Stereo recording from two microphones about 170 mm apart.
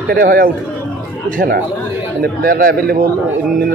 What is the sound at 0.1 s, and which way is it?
Speech, 60° right (ahead or behind).